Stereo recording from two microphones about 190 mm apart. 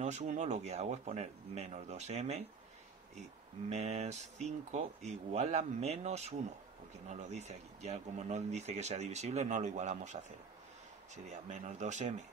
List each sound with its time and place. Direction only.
0.0 s speech: 35° right (ahead or behind)
11.2 s speech: 40° right (ahead or behind)